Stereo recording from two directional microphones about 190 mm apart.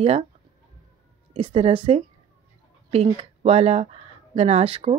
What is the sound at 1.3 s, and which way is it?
Speech, 30° right (ahead or behind).